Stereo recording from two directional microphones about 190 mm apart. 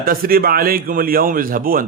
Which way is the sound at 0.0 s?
50° right (ahead or behind).